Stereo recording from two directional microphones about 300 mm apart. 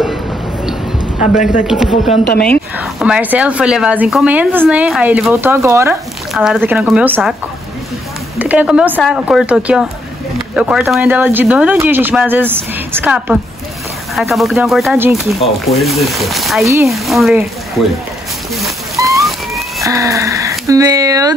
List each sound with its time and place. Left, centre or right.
1.2 s speech: left
2.3 s speech: centre
8.4 s speech: centre
18.9 s rain: centre
19.2 s a sound: centre
19.9 s speech: centre